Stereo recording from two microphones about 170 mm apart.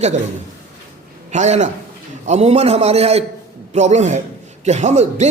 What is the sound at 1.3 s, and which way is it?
A man's voice, 40° right (ahead or behind).